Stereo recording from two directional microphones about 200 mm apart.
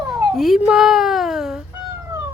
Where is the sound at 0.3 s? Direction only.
Centre (ahead or behind).